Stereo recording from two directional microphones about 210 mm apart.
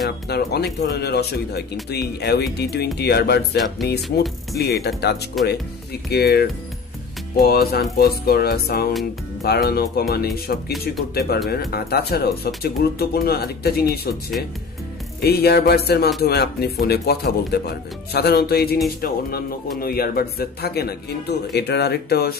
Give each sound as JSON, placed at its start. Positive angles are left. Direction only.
{"t": 0.3, "sound": "speech", "side_deg": 50}
{"t": 5.4, "sound": "speech", "side_deg": 0}
{"t": 6.0, "sound": "speech", "side_deg": 50}
{"t": 15.1, "sound": "speech", "side_deg": 50}